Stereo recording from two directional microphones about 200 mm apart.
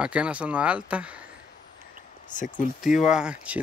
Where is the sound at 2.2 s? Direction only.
40° left (ahead or behind).